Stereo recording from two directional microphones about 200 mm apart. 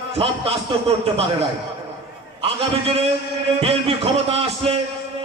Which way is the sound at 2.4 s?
30° right (ahead or behind).